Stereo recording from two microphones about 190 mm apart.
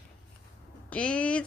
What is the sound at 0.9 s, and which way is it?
Speech, 5° left (ahead or behind).